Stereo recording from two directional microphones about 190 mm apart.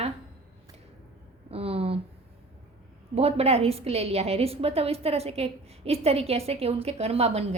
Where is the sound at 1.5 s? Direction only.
30° right (ahead or behind).